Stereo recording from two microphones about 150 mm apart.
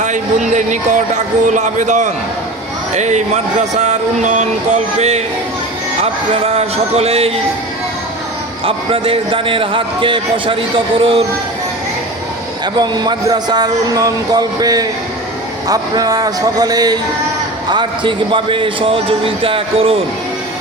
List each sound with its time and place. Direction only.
0.0 s speech: 55° right (ahead or behind)
8.6 s speech: 40° right (ahead or behind)
12.7 s speech: 30° right (ahead or behind)